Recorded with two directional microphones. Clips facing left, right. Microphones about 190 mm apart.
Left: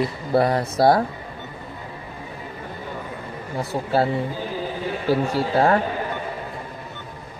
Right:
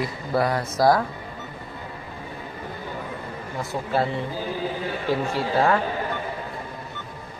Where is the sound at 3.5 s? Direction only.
35° left (ahead or behind).